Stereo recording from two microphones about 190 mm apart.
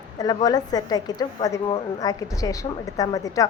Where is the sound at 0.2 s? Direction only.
20° left (ahead or behind).